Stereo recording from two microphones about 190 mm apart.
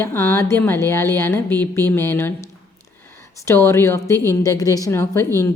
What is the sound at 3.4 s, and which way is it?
A woman's voice, 15° left (ahead or behind).